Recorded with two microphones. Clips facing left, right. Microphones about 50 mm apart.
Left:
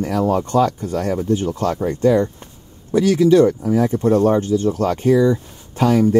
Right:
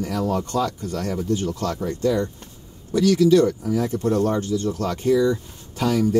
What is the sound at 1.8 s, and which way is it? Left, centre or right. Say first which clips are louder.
Speech: left 7 dB; left.